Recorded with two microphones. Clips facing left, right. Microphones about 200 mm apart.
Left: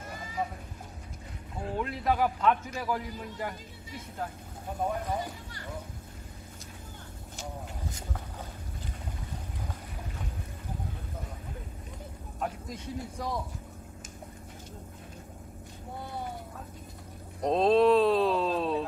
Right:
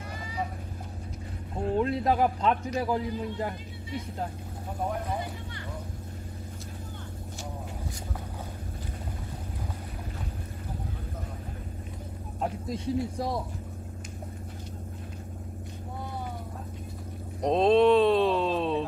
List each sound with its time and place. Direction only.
1.8 s a man's voice: 30° right (ahead or behind)
12.4 s a man's voice: 35° right (ahead or behind)
17.4 s a sound: centre (ahead or behind)